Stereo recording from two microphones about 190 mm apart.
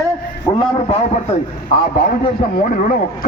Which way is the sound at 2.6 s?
45° left (ahead or behind).